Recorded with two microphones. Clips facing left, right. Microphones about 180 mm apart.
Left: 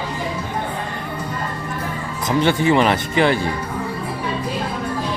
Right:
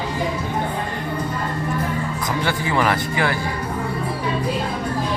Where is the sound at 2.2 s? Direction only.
25° left (ahead or behind).